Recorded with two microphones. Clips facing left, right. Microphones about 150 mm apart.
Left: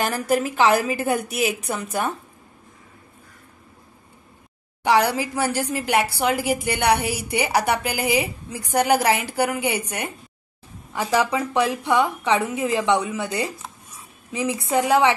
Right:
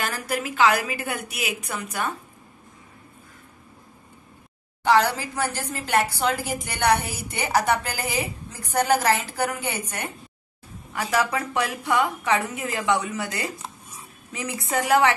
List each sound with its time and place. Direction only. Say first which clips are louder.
0.4 s a woman's voice: even; 40° left (ahead or behind)
4.8 s a woman's voice: left 1 dB; 10° left (ahead or behind)